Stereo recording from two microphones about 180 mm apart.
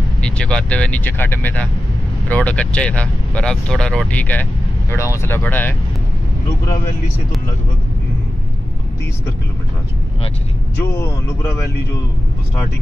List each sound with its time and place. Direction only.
0.2 s speech: 5° left (ahead or behind)
11.0 s speech: 15° left (ahead or behind)